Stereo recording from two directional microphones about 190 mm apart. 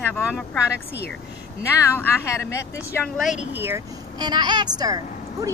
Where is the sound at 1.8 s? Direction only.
15° left (ahead or behind).